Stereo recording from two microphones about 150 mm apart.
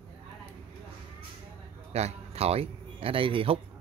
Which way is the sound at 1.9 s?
45° right (ahead or behind).